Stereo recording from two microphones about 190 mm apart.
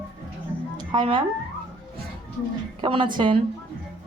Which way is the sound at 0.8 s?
25° right (ahead or behind).